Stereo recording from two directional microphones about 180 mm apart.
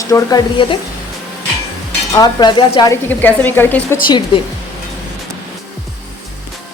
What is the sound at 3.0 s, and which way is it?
Speech, 10° left (ahead or behind).